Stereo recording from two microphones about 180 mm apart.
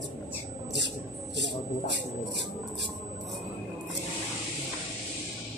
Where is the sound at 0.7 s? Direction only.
75° right (ahead or behind).